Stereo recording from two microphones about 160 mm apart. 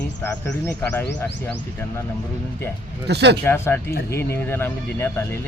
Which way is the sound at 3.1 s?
90° right.